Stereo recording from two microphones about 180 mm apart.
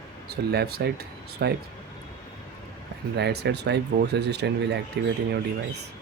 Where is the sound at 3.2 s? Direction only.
65° right (ahead or behind).